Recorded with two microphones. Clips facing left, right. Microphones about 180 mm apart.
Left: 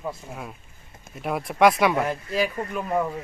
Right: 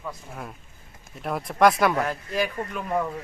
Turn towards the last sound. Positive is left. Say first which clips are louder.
# left 2 dB
turn(degrees=5)  # may be behind; listen again after turning